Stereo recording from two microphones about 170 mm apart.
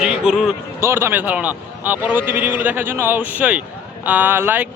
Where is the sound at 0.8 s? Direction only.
15° right (ahead or behind).